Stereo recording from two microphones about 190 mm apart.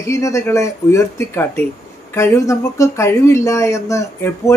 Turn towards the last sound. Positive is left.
turn(degrees=15)  # may be behind; listen again after turning